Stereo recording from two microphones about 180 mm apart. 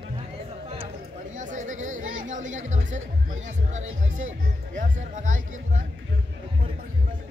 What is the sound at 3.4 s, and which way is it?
Speech, 40° right (ahead or behind).